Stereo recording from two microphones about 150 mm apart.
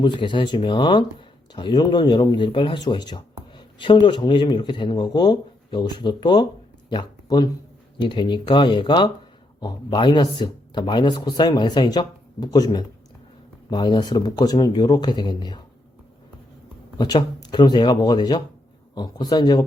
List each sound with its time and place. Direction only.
0.0 s speech: 30° left (ahead or behind)
17.0 s speech: 30° left (ahead or behind)